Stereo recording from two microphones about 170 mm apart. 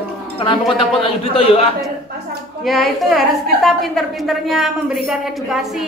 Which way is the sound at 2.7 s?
Centre (ahead or behind).